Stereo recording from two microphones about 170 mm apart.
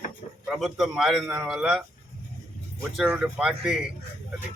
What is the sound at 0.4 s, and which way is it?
Speech, centre (ahead or behind).